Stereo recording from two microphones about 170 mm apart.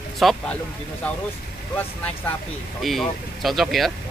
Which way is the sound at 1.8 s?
10° left (ahead or behind).